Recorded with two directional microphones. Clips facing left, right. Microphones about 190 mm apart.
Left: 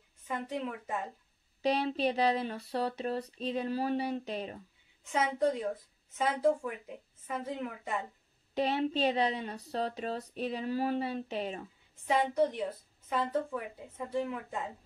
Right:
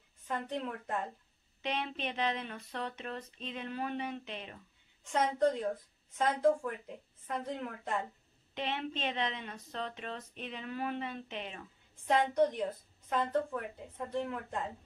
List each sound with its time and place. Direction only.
0.3 s a woman's voice: centre (ahead or behind)
1.6 s a woman's voice: 35° left (ahead or behind)
5.0 s a woman's voice: 5° left (ahead or behind)
8.5 s a woman's voice: 40° left (ahead or behind)
12.1 s a woman's voice: 5° left (ahead or behind)